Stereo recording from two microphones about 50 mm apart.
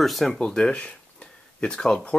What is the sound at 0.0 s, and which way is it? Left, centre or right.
Speech, centre.